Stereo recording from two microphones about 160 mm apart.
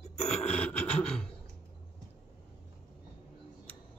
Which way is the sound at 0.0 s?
40° left (ahead or behind).